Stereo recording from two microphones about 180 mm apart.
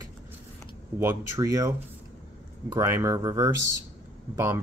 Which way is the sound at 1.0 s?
15° right (ahead or behind).